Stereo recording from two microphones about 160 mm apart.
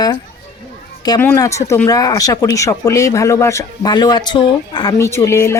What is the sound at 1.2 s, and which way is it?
Speech, 15° left (ahead or behind).